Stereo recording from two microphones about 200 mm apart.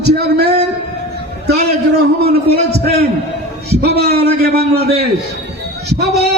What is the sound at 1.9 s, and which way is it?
Speech, 55° right (ahead or behind).